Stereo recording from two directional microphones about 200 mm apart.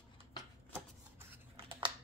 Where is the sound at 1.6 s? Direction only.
25° right (ahead or behind).